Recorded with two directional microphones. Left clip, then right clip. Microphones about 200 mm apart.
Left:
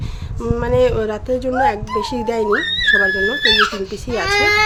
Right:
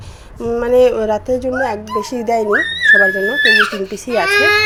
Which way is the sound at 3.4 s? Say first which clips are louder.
Right 5 dB; 40° left (ahead or behind).